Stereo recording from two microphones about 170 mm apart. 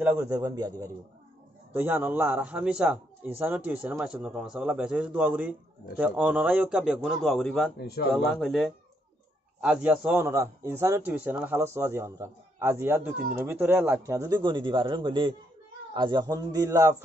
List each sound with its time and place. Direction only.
0.0 s speech: 10° right (ahead or behind)
1.7 s a man's voice: 10° right (ahead or behind)